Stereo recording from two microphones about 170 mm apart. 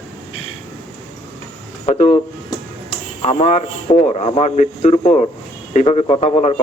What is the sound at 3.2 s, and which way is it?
A man's voice, 40° left (ahead or behind).